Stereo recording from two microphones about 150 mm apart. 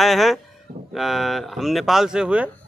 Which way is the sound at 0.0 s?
Centre (ahead or behind).